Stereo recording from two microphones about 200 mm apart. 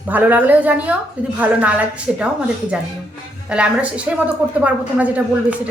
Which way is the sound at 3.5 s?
5° right (ahead or behind).